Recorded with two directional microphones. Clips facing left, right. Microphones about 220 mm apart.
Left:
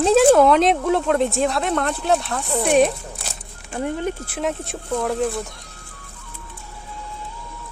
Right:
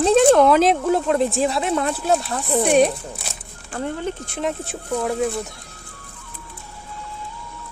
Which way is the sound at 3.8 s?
15° left (ahead or behind).